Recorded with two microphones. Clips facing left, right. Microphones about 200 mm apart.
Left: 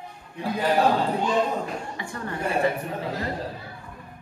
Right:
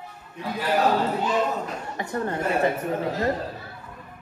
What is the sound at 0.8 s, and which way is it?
Speech, 20° right (ahead or behind).